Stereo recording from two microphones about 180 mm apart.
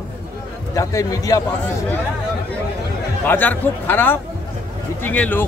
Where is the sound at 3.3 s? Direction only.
10° left (ahead or behind).